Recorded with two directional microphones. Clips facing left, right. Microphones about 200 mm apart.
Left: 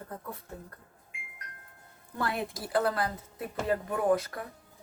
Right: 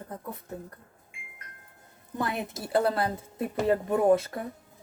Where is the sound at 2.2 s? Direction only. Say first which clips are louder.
Right 1 dB; 20° right (ahead or behind).